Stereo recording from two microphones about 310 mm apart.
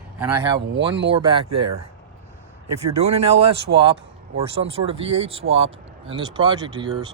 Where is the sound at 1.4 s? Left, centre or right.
Right.